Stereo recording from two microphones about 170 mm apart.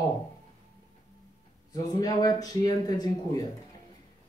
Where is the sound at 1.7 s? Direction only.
20° left (ahead or behind).